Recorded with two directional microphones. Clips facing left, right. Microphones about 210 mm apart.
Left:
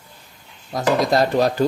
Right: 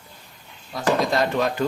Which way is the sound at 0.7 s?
40° left (ahead or behind).